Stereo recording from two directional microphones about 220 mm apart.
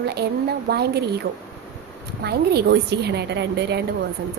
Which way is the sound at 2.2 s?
45° right (ahead or behind).